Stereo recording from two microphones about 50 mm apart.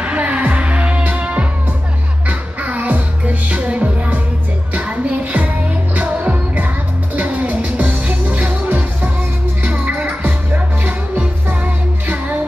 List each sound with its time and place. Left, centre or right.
0.0 s music: right